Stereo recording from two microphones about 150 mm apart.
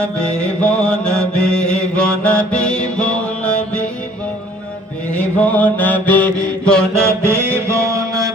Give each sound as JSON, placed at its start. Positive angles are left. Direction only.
{"t": 0.0, "sound": "mantra", "side_deg": 5}
{"t": 5.1, "sound": "mantra", "side_deg": 10}
{"t": 6.9, "sound": "mantra", "side_deg": -20}